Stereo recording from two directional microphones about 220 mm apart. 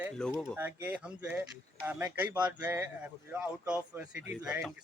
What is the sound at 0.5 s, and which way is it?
Speech, 10° right (ahead or behind).